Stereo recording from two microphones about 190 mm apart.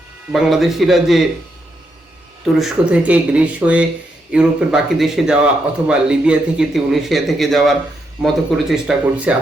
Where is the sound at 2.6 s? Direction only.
5° right (ahead or behind).